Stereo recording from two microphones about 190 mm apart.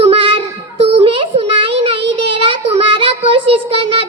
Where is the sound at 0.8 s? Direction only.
30° right (ahead or behind).